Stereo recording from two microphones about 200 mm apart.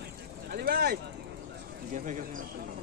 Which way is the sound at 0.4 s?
50° right (ahead or behind).